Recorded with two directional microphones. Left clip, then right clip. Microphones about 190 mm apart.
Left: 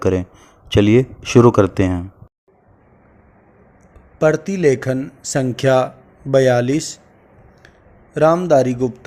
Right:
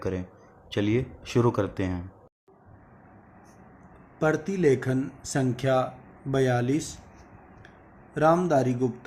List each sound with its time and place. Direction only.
0.0 s speech: 45° left (ahead or behind)
4.2 s speech: 50° left (ahead or behind)
8.1 s speech: 50° left (ahead or behind)